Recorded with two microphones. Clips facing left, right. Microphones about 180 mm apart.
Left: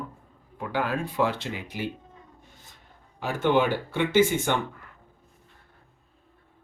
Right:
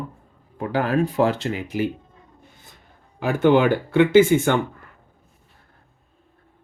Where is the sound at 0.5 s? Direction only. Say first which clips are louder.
Right 7 dB; 40° right (ahead or behind).